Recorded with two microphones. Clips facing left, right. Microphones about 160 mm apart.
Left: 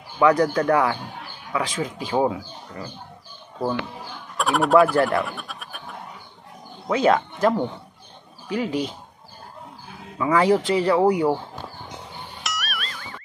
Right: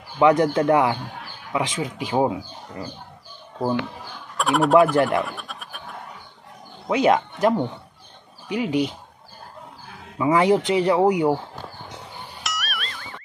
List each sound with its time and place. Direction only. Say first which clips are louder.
0.2 s speech: right 1 dB; 20° right (ahead or behind)
4.4 s speech: right 1 dB; centre (ahead or behind)
4.9 s speech: right 1 dB; 15° right (ahead or behind)
5.2 s speech: even; centre (ahead or behind)
6.9 s speech: right 1 dB; 15° right (ahead or behind)
10.1 s speech: right 1 dB; 20° right (ahead or behind)
12.4 s music: even; centre (ahead or behind)